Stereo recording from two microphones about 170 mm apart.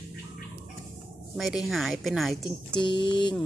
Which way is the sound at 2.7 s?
30° left (ahead or behind).